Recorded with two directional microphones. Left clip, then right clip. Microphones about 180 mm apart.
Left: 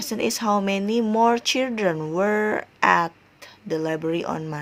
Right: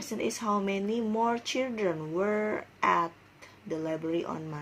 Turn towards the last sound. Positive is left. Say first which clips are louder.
# left 7 dB
turn(degrees=45)  # may be behind; listen again after turning